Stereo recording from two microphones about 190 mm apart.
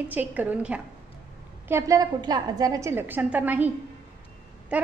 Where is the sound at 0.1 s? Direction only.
10° right (ahead or behind).